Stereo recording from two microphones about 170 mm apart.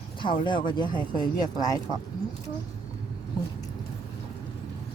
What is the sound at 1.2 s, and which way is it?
Speech, 20° left (ahead or behind).